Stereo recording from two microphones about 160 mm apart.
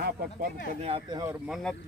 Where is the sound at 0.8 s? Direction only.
35° right (ahead or behind).